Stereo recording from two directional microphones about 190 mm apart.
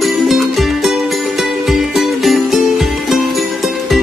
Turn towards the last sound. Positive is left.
turn(degrees=0)  # may be behind; listen again after turning